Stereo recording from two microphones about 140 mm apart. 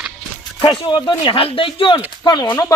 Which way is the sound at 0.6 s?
35° left (ahead or behind).